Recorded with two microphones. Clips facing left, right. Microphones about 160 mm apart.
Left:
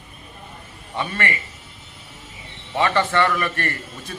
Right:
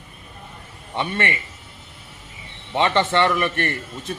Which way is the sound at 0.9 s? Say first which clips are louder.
Right 1 dB; 20° right (ahead or behind).